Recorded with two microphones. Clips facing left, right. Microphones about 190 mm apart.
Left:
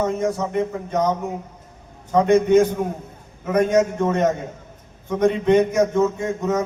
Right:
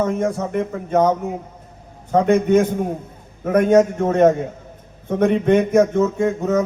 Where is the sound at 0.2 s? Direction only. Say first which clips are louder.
Right 1 dB; 60° right (ahead or behind).